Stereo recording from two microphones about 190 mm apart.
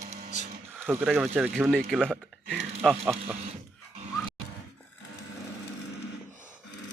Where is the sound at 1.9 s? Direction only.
Centre (ahead or behind).